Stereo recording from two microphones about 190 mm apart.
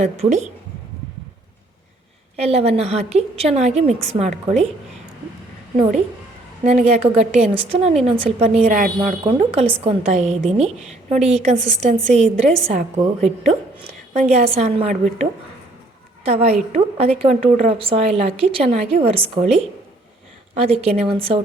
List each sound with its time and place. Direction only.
0.0 s a woman's voice: 35° right (ahead or behind)
2.3 s a woman's voice: 35° right (ahead or behind)
6.7 s a woman's voice: 40° right (ahead or behind)
14.1 s a woman's voice: 35° right (ahead or behind)
20.6 s a woman's voice: 30° right (ahead or behind)